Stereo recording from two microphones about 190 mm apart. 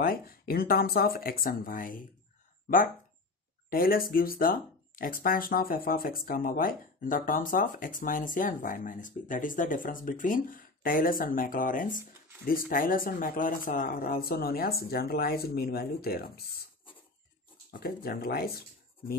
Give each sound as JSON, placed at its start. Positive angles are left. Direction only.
{"t": 0.0, "sound": "speech", "side_deg": 50}
{"t": 3.7, "sound": "speech", "side_deg": 50}
{"t": 17.7, "sound": "speech", "side_deg": 50}